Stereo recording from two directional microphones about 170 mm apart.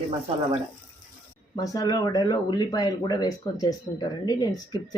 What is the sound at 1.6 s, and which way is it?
Speech, 20° left (ahead or behind).